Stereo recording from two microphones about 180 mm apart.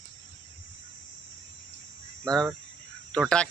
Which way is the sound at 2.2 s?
5° left (ahead or behind).